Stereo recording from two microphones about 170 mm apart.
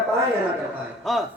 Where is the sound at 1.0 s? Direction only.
Centre (ahead or behind).